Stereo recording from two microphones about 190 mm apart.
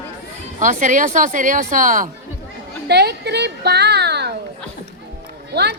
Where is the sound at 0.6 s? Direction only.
40° right (ahead or behind).